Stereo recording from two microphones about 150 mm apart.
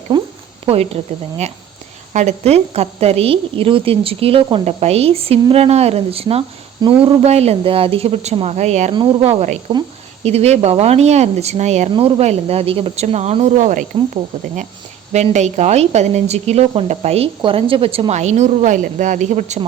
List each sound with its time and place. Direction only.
0.1 s speech: 30° right (ahead or behind)
0.6 s a woman's voice: 40° right (ahead or behind); by 13.8 s 55° right (ahead or behind)
15.1 s speech: 50° right (ahead or behind)